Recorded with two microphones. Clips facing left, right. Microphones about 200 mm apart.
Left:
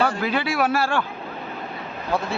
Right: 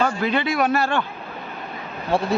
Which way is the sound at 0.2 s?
5° left (ahead or behind).